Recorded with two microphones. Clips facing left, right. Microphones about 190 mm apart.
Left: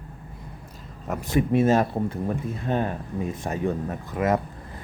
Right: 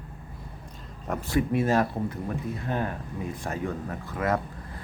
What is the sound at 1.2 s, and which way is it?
Speech, 20° left (ahead or behind).